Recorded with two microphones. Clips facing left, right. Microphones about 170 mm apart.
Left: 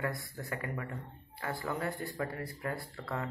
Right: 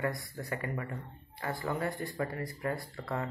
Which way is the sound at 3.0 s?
15° right (ahead or behind).